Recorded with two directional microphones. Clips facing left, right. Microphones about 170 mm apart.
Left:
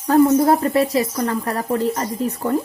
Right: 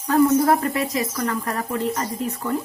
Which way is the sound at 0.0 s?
35° left (ahead or behind).